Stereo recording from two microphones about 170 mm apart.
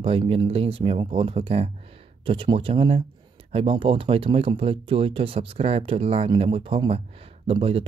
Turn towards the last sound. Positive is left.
turn(degrees=-35)  # may be behind; listen again after turning